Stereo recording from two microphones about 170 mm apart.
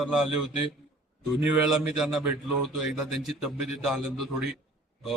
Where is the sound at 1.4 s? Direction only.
5° right (ahead or behind).